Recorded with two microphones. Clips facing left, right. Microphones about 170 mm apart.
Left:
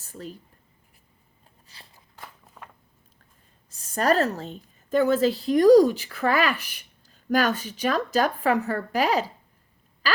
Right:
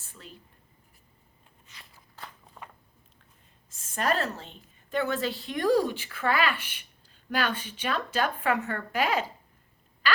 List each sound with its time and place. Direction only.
0.0 s a woman's voice: 40° left (ahead or behind)
1.6 s walk: 30° left (ahead or behind)
2.6 s a sound: centre (ahead or behind)
3.7 s a woman's voice: 40° left (ahead or behind)